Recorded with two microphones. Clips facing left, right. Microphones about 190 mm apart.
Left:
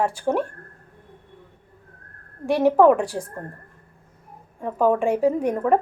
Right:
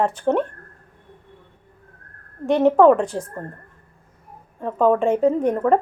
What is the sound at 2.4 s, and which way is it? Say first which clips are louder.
Speech: right 2 dB; 10° left (ahead or behind).